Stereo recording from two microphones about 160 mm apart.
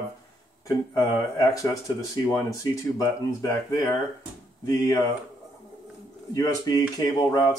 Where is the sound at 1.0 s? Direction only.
20° left (ahead or behind).